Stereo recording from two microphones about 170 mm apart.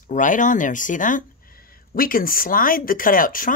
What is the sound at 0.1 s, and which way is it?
Speech, 50° left (ahead or behind).